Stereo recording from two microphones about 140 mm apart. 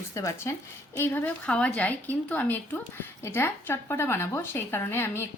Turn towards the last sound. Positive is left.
turn(degrees=15)  # may be behind; listen again after turning